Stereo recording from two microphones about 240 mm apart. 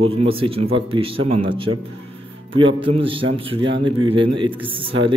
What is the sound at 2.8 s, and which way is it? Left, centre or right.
Speech, right.